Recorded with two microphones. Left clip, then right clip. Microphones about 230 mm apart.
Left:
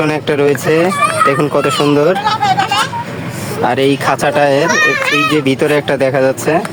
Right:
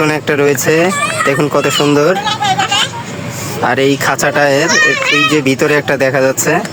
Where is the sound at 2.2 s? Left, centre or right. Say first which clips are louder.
Left 1 dB; left.